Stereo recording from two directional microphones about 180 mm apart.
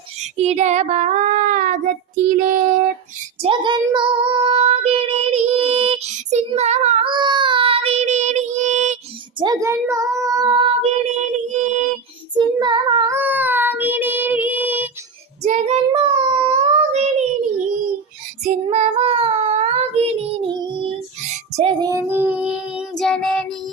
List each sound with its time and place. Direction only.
0.2 s child singing: 40° right (ahead or behind)
2.3 s female singing: 45° right (ahead or behind)
3.4 s child singing: 25° right (ahead or behind)
7.1 s child singing: 25° right (ahead or behind); by 9.0 s 40° right (ahead or behind)
9.4 s speech: 20° right (ahead or behind)
11.4 s music: 40° right (ahead or behind)
12.3 s child singing: 25° right (ahead or behind)
13.1 s child singing: 10° right (ahead or behind)
15.4 s child singing: 40° right (ahead or behind)
18.4 s child singing: 35° right (ahead or behind)
21.2 s child singing: 40° right (ahead or behind); by 23.6 s centre (ahead or behind)